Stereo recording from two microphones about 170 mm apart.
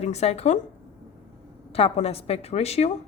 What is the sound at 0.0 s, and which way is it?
Speech, 40° left (ahead or behind).